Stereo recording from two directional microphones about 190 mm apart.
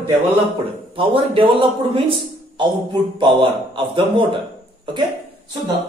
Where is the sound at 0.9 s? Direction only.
25° right (ahead or behind).